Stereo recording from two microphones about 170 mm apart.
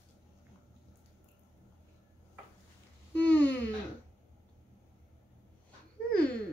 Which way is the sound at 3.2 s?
10° left (ahead or behind).